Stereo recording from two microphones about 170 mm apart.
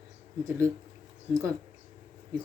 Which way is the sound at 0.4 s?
15° right (ahead or behind).